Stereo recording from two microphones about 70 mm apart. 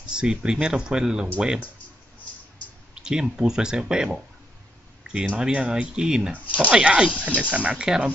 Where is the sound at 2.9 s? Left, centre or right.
Centre.